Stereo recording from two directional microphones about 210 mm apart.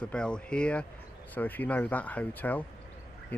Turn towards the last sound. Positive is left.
turn(degrees=10)  # may be behind; listen again after turning